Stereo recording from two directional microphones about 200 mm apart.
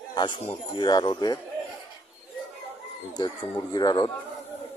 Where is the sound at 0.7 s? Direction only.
20° left (ahead or behind).